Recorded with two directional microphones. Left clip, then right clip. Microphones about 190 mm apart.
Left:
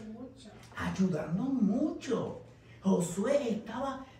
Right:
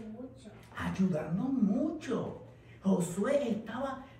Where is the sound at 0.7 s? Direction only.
Centre (ahead or behind).